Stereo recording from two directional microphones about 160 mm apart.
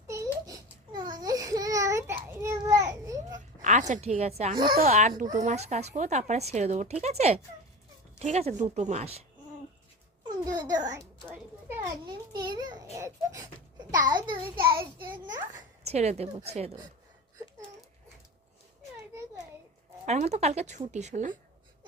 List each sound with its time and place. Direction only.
0.1 s baby cry: 20° right (ahead or behind)
3.6 s a woman's voice: 50° right (ahead or behind)
4.7 s speech: 60° right (ahead or behind); by 9.2 s 40° right (ahead or behind)
10.2 s a child's voice: 25° right (ahead or behind)
12.4 s a child's voice: 25° right (ahead or behind)
15.9 s speech: 40° right (ahead or behind)
20.1 s speech: 45° right (ahead or behind)